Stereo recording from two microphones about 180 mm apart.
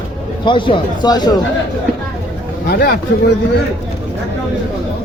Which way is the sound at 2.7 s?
65° left (ahead or behind).